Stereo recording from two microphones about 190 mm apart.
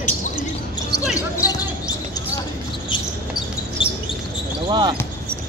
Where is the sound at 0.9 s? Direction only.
60° right (ahead or behind).